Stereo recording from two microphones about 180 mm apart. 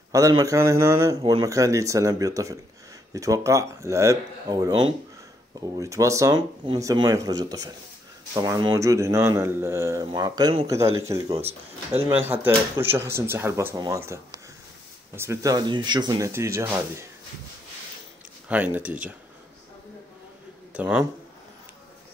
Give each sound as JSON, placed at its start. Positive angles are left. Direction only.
{"t": 0.1, "sound": "a man's voice", "side_deg": -20}
{"t": 18.5, "sound": "a man's voice", "side_deg": -10}
{"t": 20.7, "sound": "speech", "side_deg": -10}